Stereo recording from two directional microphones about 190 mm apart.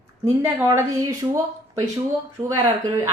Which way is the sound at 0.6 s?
15° right (ahead or behind).